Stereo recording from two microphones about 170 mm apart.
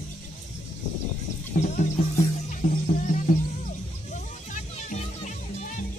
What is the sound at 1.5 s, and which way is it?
Music, 50° left (ahead or behind).